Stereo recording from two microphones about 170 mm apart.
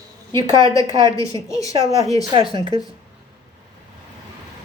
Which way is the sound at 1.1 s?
20° left (ahead or behind).